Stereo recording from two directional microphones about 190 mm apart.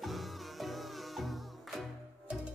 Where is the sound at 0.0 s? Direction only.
Centre (ahead or behind).